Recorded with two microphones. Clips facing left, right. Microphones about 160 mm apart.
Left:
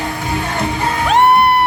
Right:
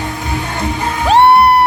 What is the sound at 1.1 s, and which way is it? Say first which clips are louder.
Music: right 4 dB; 30° right (ahead or behind).